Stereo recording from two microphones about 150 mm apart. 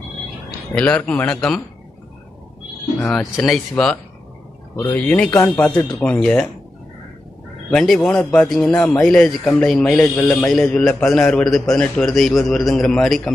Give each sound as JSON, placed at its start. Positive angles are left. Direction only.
{"t": 0.7, "sound": "speech", "side_deg": 10}
{"t": 3.0, "sound": "speech", "side_deg": 5}
{"t": 4.7, "sound": "speech", "side_deg": 20}
{"t": 5.0, "sound": "speech", "side_deg": 5}
{"t": 7.7, "sound": "speech", "side_deg": 5}